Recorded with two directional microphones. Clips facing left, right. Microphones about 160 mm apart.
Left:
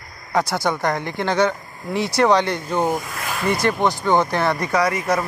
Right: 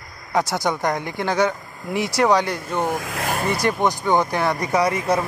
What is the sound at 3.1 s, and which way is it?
Vehicle, 45° right (ahead or behind).